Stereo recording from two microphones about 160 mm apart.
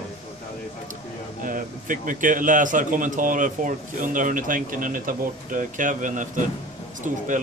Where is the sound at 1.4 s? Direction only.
55° right (ahead or behind).